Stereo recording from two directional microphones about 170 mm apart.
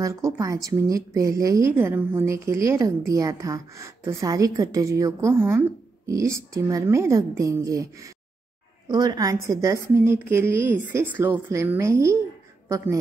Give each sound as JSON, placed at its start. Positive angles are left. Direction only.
{"t": 0.0, "sound": "a woman's voice", "side_deg": -20}